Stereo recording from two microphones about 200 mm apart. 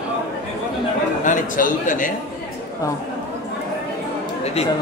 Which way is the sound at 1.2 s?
40° left (ahead or behind).